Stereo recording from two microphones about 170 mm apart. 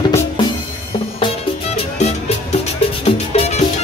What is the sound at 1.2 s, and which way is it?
Music, 40° left (ahead or behind).